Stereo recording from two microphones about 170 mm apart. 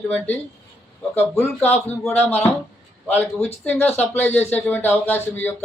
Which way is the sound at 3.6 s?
15° left (ahead or behind).